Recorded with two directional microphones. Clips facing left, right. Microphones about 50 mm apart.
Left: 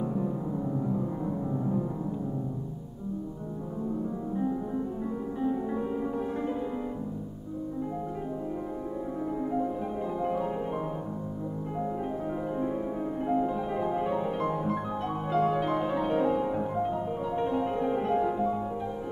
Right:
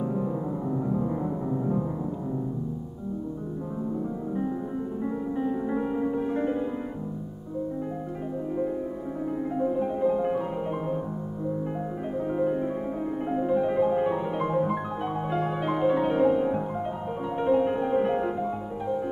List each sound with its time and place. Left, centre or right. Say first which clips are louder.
1.0 s music: right 3 dB; right
5.0 s music: right 5 dB; centre
9.7 s music: right 7 dB; centre